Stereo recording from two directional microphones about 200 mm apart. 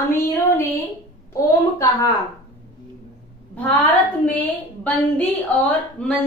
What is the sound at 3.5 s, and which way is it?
Speech, 10° left (ahead or behind).